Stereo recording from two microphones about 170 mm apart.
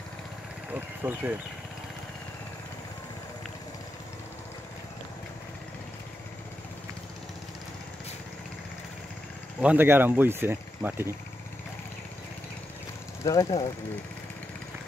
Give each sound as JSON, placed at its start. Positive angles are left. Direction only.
{"t": 0.7, "sound": "speech", "side_deg": -10}
{"t": 9.6, "sound": "speech", "side_deg": -10}
{"t": 13.2, "sound": "speech", "side_deg": 20}